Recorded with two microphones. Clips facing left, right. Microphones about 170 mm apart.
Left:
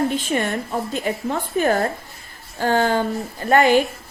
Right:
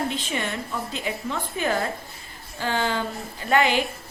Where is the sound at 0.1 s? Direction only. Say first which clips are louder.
Left 7 dB; 50° left (ahead or behind).